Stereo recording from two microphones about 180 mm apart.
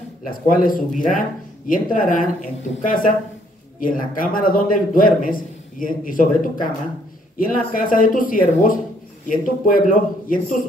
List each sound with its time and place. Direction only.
0.3 s a man's voice: 50° left (ahead or behind)